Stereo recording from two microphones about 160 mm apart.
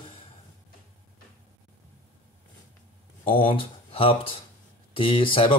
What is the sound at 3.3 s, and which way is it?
Speech, 35° left (ahead or behind).